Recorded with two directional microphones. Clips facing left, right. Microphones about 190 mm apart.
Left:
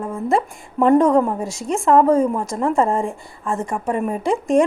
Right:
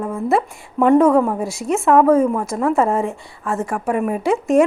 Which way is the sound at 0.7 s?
Centre (ahead or behind).